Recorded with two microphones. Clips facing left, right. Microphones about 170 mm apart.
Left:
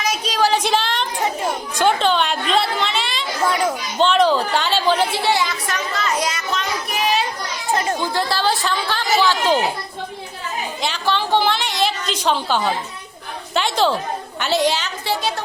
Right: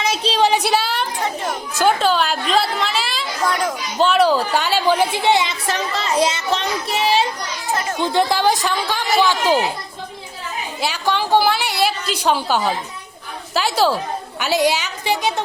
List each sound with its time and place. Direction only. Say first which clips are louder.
0.0 s speech: right 2 dB; 30° right (ahead or behind)
0.5 s a woman's voice: right 1 dB; 10° right (ahead or behind)
3.9 s a woman's voice: right 1 dB; 5° right (ahead or behind)
10.8 s a woman's voice: right 2 dB; 10° right (ahead or behind)